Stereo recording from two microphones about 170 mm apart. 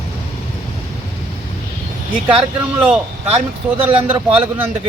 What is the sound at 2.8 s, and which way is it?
Speech, 10° right (ahead or behind).